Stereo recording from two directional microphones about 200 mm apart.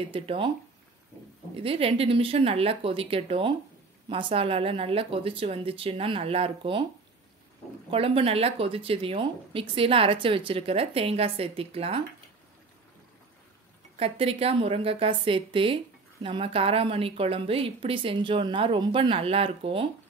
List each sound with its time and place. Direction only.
0.1 s a woman's voice: 25° right (ahead or behind)
1.5 s a woman's voice: 30° right (ahead or behind)
7.9 s a woman's voice: 30° right (ahead or behind)
13.9 s a woman's voice: 30° right (ahead or behind)